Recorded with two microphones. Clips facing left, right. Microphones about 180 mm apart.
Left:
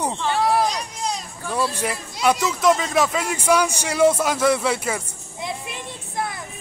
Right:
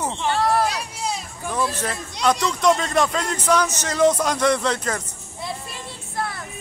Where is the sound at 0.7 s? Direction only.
5° right (ahead or behind).